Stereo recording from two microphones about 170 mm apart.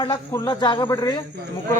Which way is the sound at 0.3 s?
20° left (ahead or behind).